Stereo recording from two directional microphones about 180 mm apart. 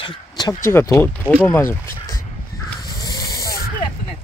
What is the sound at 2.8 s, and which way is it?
Crow, 20° left (ahead or behind).